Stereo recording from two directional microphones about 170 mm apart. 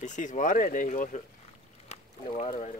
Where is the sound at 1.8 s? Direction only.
40° left (ahead or behind).